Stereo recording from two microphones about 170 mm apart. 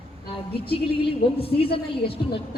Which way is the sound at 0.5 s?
35° left (ahead or behind).